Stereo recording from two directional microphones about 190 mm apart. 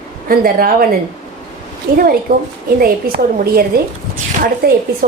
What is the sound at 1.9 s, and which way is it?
A woman's voice, 50° right (ahead or behind).